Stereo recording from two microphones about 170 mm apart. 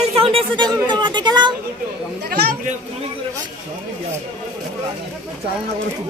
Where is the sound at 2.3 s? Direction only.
65° right (ahead or behind).